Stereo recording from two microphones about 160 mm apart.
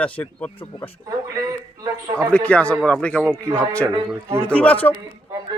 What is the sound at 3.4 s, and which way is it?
Speech, 20° right (ahead or behind).